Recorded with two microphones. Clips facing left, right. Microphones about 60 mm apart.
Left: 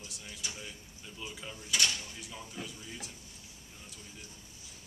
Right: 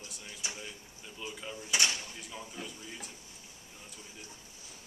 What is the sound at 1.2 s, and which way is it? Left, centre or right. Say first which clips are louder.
Speech: right 2 dB; centre.